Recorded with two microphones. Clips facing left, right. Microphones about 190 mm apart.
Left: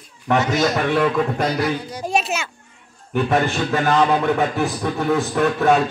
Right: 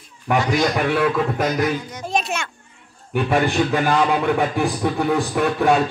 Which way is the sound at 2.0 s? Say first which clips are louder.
Left 2 dB; 5° left (ahead or behind).